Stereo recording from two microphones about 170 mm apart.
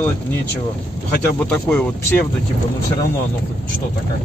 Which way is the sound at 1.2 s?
10° left (ahead or behind).